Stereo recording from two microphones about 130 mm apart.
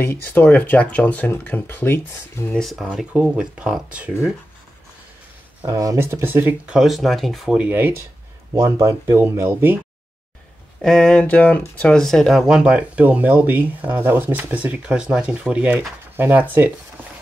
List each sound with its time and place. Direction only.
0.0 s speech: 15° left (ahead or behind)
2.5 s speech: centre (ahead or behind)
2.9 s speech: 10° right (ahead or behind)
5.7 s speech: 25° right (ahead or behind)
6.8 s speech: centre (ahead or behind)
8.5 s speech: 25° right (ahead or behind)
10.8 s speech: 5° left (ahead or behind); by 16.4 s 15° right (ahead or behind)